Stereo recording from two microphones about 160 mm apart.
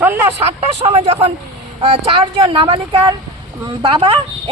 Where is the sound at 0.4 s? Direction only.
40° right (ahead or behind).